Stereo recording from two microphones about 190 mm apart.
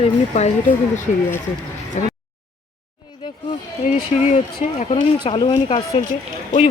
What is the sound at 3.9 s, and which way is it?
Speech, 40° left (ahead or behind).